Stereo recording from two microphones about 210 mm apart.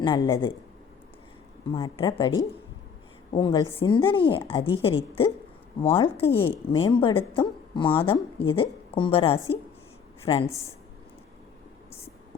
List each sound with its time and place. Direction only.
0.0 s a woman's voice: 20° left (ahead or behind)
1.7 s a woman's voice: 25° left (ahead or behind)
3.3 s a woman's voice: 20° left (ahead or behind)